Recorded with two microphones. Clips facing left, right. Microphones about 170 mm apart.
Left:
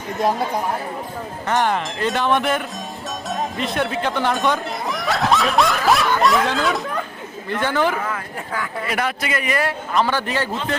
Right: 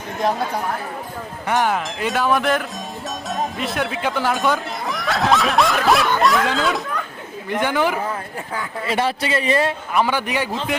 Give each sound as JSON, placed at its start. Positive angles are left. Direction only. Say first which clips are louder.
{"t": 0.2, "sound": "speech", "louder": "left 1 dB", "side_deg": 5}
{"t": 1.5, "sound": "speech", "louder": "even", "side_deg": -5}
{"t": 7.5, "sound": "a man's voice", "louder": "even", "side_deg": -15}
{"t": 8.0, "sound": "speech", "louder": "right 1 dB", "side_deg": -30}
{"t": 9.9, "sound": "a man's voice", "louder": "left 2 dB", "side_deg": -10}